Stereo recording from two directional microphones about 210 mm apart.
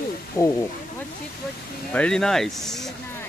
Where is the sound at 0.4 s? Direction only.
15° left (ahead or behind).